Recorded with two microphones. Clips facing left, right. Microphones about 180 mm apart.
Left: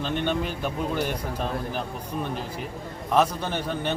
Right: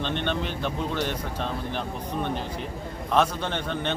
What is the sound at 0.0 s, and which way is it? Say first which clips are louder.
Speech: left 2 dB; 5° left (ahead or behind).